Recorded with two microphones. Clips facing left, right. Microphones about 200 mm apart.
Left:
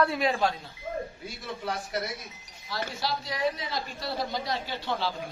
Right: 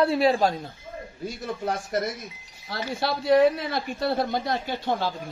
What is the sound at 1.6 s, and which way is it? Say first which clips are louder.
Speech: right 5 dB; 45° right (ahead or behind).